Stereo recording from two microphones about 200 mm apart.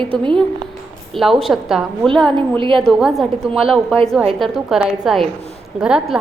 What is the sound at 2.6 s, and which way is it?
Speech, 25° right (ahead or behind).